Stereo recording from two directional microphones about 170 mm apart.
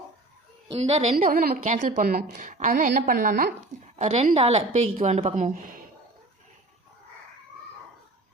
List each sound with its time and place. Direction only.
0.8 s a woman's voice: 40° right (ahead or behind)
1.1 s a woman's voice: 55° right (ahead or behind)
3.9 s a woman's voice: 40° right (ahead or behind)